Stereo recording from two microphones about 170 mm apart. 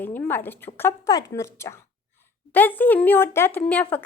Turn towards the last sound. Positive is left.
turn(degrees=5)  # may be behind; listen again after turning